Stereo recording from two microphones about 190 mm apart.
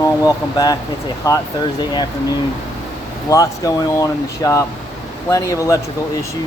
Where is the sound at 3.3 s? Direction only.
15° left (ahead or behind).